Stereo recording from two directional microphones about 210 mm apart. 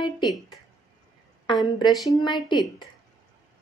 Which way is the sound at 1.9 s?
Centre (ahead or behind).